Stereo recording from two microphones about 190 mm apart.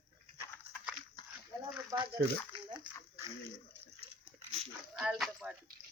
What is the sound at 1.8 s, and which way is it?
Speech, 20° right (ahead or behind).